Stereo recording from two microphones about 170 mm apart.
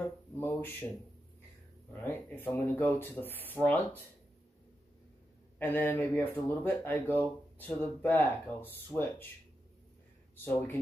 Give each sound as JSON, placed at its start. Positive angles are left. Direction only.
{"t": 0.4, "sound": "speech", "side_deg": 15}
{"t": 2.2, "sound": "speech", "side_deg": 10}
{"t": 5.6, "sound": "speech", "side_deg": 10}
{"t": 10.3, "sound": "speech", "side_deg": 10}